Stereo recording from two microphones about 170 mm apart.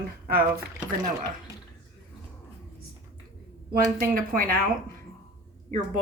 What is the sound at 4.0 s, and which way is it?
Speech, 55° right (ahead or behind).